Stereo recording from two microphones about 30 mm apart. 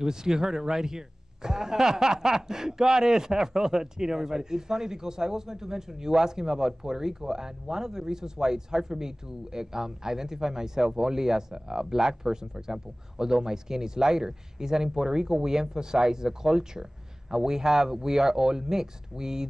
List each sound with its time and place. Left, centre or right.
0.0 s a man's voice: right